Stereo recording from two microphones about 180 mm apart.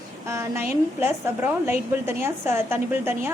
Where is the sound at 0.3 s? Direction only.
15° right (ahead or behind).